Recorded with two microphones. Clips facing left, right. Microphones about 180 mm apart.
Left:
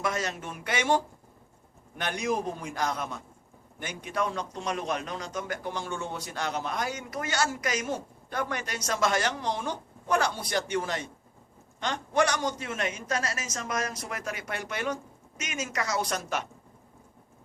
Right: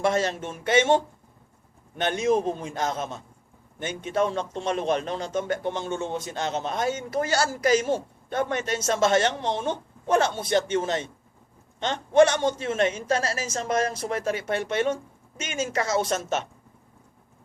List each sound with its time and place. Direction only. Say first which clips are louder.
0.0 s a man's voice: right 7 dB; 30° right (ahead or behind)